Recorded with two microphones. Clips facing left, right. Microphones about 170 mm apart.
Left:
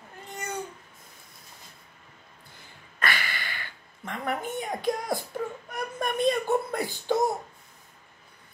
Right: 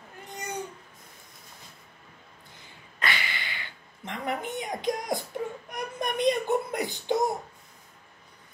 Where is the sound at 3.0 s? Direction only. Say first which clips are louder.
Left 1 dB; 20° right (ahead or behind).